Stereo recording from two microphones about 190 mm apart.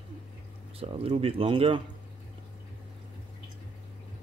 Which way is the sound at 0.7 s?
30° right (ahead or behind).